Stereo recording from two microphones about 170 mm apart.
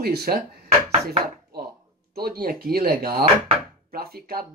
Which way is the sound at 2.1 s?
65° right (ahead or behind).